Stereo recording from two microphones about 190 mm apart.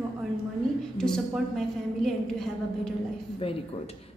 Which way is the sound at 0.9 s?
5° left (ahead or behind).